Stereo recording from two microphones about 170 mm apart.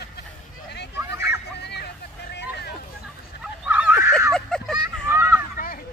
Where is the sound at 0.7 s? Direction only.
80° left.